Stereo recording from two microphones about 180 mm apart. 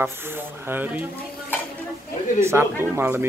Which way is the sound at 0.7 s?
10° right (ahead or behind).